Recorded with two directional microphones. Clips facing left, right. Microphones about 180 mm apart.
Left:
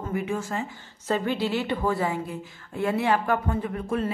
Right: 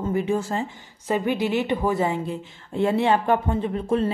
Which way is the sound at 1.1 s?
15° right (ahead or behind).